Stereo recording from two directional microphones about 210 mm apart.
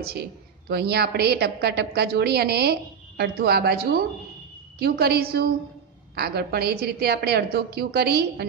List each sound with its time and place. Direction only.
0.7 s a woman's voice: 50° right (ahead or behind)